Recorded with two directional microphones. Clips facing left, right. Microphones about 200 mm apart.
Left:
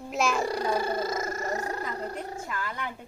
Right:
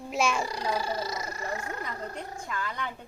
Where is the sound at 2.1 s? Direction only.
5° left (ahead or behind).